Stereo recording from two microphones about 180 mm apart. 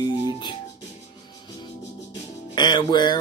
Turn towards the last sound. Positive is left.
turn(degrees=25)  # may be behind; listen again after turning